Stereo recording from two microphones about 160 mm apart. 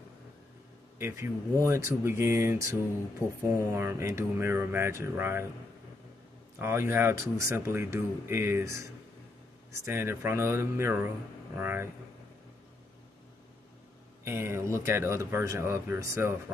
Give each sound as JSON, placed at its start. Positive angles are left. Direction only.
{"t": 0.9, "sound": "a man's voice", "side_deg": -15}
{"t": 6.6, "sound": "speech", "side_deg": -15}
{"t": 9.8, "sound": "speech", "side_deg": -15}
{"t": 14.2, "sound": "speech", "side_deg": -15}